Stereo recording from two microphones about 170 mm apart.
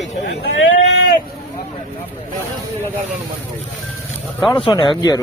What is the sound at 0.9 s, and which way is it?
Vehicle, 75° left (ahead or behind).